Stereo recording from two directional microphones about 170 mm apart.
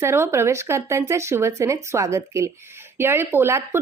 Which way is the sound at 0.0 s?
15° right (ahead or behind).